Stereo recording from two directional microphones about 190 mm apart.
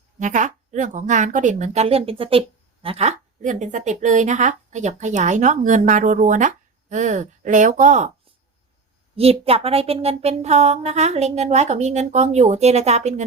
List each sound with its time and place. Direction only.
0.2 s a woman's voice: 40° right (ahead or behind)
9.1 s a woman's voice: 30° right (ahead or behind)